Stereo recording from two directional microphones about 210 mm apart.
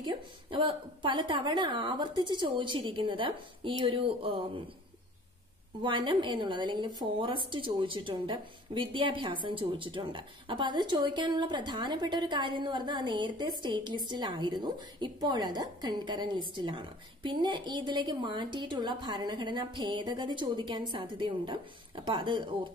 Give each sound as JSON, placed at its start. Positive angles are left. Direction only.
{"t": 0.0, "sound": "a woman's voice", "side_deg": -20}
{"t": 5.8, "sound": "a woman's voice", "side_deg": -25}